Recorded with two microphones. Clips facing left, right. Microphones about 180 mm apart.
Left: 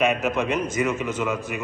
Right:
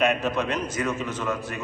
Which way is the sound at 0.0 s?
10° left (ahead or behind).